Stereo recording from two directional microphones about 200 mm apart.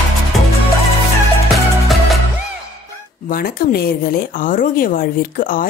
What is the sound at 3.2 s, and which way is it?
Speech, 45° left (ahead or behind).